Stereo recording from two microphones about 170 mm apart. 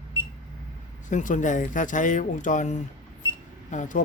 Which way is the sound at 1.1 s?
50° left (ahead or behind).